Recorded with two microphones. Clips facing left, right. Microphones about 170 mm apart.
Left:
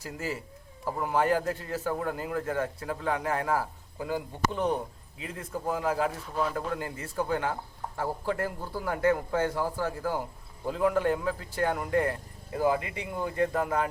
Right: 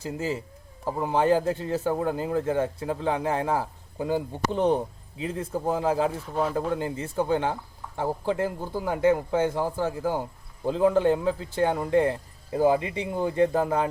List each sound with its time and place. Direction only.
0.0 s speech: 25° right (ahead or behind)